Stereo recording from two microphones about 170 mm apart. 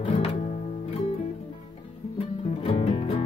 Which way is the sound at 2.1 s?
35° left (ahead or behind).